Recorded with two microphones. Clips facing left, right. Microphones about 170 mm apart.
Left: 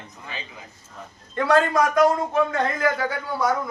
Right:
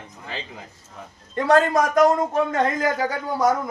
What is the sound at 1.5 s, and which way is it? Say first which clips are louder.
A man's voice: right 2 dB; 45° right (ahead or behind).